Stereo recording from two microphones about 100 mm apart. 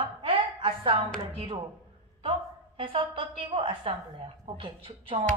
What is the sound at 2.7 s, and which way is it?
Speech, 60° right (ahead or behind).